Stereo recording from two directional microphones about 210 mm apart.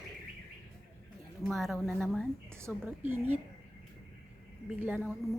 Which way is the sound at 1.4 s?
Centre (ahead or behind).